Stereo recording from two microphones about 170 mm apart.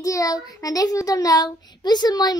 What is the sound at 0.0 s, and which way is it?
A child's voice, 20° left (ahead or behind).